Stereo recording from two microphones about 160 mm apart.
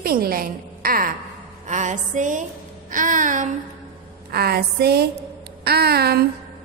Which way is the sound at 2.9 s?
55° right (ahead or behind).